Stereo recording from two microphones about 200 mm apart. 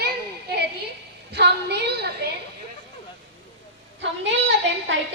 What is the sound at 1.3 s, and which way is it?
Speech, 55° right (ahead or behind).